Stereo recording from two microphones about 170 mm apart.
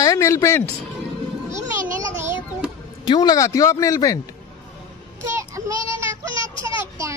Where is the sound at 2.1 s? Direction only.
15° right (ahead or behind).